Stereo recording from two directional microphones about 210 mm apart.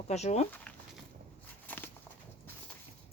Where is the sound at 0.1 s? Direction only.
35° left (ahead or behind).